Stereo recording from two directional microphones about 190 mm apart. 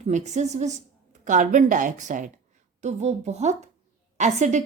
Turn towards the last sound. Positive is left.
turn(degrees=-40)  # may be behind; listen again after turning